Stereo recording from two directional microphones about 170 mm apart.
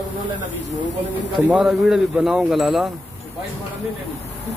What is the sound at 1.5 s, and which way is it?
Speech, 5° right (ahead or behind).